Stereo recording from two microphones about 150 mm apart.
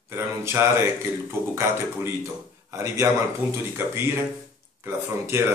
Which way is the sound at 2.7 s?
20° right (ahead or behind).